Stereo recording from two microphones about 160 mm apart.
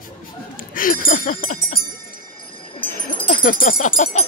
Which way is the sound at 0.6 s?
60° left (ahead or behind).